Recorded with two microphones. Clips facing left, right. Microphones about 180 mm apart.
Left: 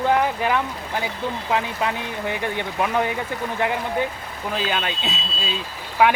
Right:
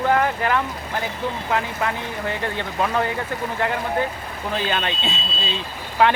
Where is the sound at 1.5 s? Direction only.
15° left (ahead or behind).